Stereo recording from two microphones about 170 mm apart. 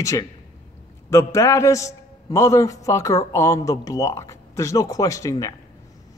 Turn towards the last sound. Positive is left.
turn(degrees=20)  # may be behind; listen again after turning